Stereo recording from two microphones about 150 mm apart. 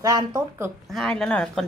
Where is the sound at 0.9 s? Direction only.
5° left (ahead or behind).